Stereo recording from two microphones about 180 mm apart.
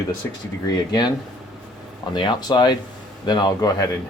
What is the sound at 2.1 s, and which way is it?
Speech, 25° left (ahead or behind).